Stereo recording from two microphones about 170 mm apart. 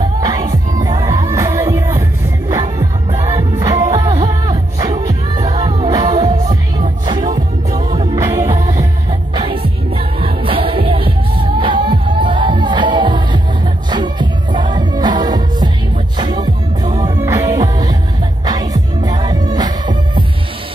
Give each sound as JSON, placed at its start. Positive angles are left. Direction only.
{"t": 0.2, "sound": "music", "side_deg": -25}
{"t": 7.2, "sound": "music", "side_deg": -50}
{"t": 7.9, "sound": "music", "side_deg": -35}
{"t": 8.2, "sound": "music", "side_deg": -20}